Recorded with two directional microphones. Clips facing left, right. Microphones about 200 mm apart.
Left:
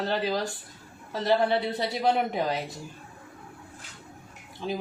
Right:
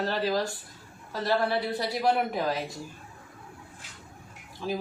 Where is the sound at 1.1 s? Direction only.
25° left (ahead or behind).